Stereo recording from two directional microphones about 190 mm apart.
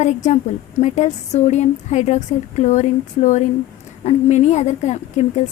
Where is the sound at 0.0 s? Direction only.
35° left (ahead or behind).